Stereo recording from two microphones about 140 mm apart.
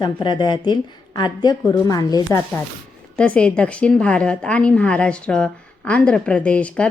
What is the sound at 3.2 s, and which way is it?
A woman's voice, 10° left (ahead or behind).